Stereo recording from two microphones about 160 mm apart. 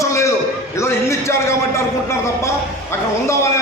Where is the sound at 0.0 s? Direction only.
15° left (ahead or behind).